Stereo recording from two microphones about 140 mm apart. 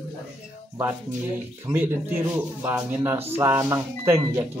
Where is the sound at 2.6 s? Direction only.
15° right (ahead or behind).